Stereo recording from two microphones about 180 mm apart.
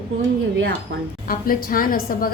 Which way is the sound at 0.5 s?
70° right (ahead or behind).